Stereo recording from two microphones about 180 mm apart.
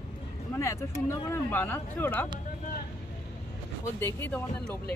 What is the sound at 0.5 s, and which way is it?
Speech, 15° left (ahead or behind).